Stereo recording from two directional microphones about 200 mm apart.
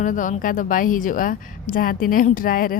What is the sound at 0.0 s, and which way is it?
A woman's voice, 40° left (ahead or behind).